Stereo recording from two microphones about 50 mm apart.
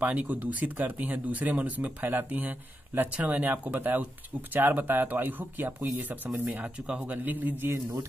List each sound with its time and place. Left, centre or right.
0.0 s speech: right
6.6 s speech: right